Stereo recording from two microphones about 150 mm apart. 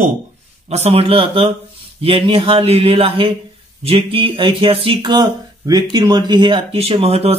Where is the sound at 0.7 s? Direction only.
45° right (ahead or behind).